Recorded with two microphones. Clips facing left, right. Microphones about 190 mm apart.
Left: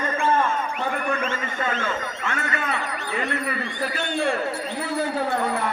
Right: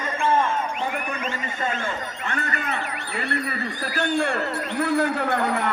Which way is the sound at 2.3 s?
35° right (ahead or behind).